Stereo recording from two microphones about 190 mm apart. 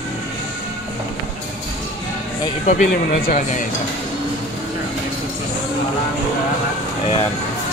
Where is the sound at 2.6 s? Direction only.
35° left (ahead or behind).